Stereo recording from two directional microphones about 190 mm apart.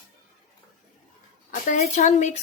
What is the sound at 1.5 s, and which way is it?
Speech, 40° left (ahead or behind).